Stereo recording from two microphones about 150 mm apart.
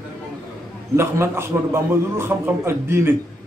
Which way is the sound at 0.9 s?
15° right (ahead or behind).